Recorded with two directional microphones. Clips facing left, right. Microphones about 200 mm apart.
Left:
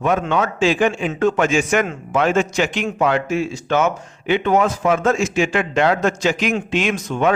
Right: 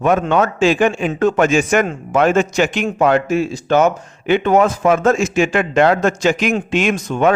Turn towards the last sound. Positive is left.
turn(degrees=-50)  # may be behind; listen again after turning